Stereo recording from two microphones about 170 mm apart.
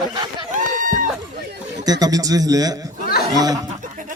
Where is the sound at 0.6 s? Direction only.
50° right (ahead or behind).